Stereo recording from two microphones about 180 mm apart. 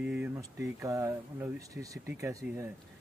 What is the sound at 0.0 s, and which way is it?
Speech, 10° right (ahead or behind).